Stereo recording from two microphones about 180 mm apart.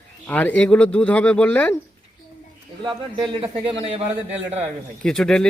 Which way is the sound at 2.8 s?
25° right (ahead or behind).